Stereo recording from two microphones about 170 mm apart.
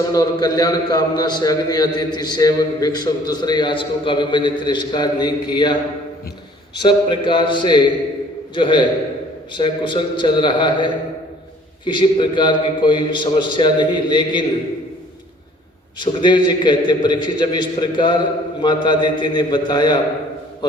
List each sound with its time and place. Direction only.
0.1 s a man's voice: 20° left (ahead or behind)
6.8 s a man's voice: 25° left (ahead or behind)
16.0 s a man's voice: 25° left (ahead or behind)